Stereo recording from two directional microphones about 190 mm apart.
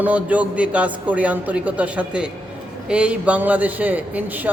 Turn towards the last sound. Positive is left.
turn(degrees=-10)  # may be behind; listen again after turning